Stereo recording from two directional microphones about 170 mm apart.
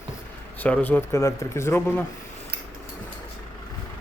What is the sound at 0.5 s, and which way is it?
Speech, 10° left (ahead or behind).